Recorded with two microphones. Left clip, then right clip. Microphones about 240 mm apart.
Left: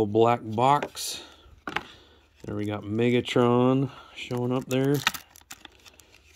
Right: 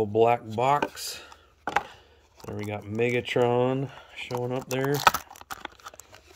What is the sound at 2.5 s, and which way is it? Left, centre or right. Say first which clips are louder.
Speech: left 3 dB; centre.